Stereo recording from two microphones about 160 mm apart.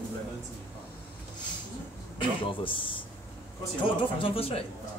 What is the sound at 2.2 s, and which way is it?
Speech, 30° left (ahead or behind).